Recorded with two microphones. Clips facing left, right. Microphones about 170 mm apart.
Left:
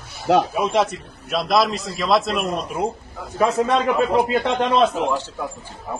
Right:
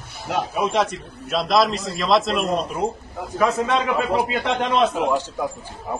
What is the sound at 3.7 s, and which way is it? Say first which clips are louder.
A man's voice: left 3 dB; centre (ahead or behind).